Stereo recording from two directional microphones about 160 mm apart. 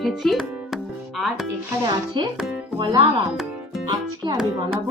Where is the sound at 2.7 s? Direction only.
30° right (ahead or behind).